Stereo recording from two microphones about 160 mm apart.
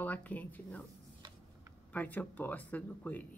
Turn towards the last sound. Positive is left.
turn(degrees=10)  # may be behind; listen again after turning